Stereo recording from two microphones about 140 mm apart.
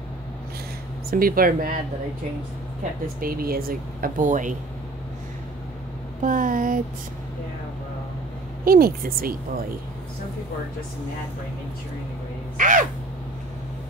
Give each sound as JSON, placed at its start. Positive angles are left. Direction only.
{"t": 1.1, "sound": "speech", "side_deg": -90}
{"t": 3.2, "sound": "speech", "side_deg": -90}
{"t": 6.2, "sound": "speech", "side_deg": -70}
{"t": 8.6, "sound": "speech", "side_deg": -90}
{"t": 12.5, "sound": "speech", "side_deg": -70}